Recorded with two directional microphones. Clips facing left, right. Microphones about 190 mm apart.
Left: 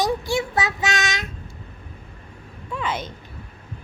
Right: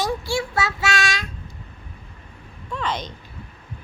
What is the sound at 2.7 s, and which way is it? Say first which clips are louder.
Speech: even; 5° left (ahead or behind).